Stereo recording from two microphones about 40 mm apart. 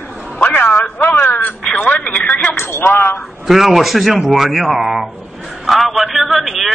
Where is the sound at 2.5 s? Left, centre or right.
Left.